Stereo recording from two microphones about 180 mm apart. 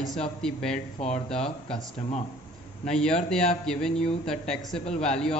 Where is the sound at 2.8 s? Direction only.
5° left (ahead or behind).